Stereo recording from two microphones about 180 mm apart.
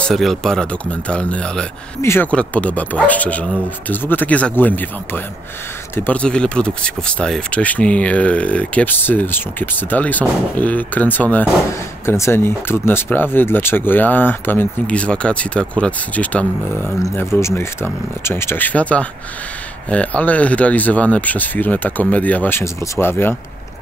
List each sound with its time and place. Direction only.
0.1 s speech: centre (ahead or behind)